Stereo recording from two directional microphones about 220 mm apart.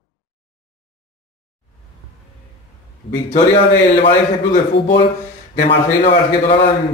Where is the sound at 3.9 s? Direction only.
25° left (ahead or behind).